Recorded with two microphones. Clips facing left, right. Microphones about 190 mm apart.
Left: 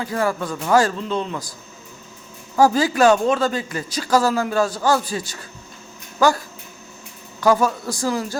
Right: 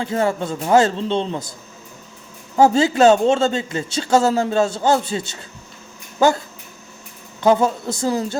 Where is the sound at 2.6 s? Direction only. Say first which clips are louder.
Right 2 dB; 25° right (ahead or behind).